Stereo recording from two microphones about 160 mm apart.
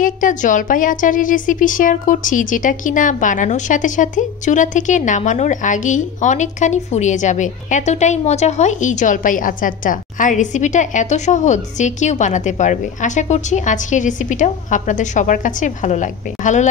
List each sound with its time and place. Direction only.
0.0 s a woman's voice: 55° left (ahead or behind)